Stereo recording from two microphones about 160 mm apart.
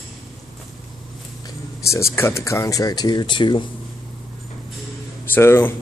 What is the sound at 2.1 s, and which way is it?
Speech, 15° left (ahead or behind).